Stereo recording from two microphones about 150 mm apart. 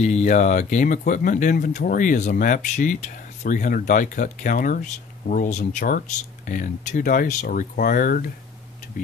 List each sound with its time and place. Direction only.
0.0 s speech: 55° left (ahead or behind); by 8.3 s 70° left (ahead or behind)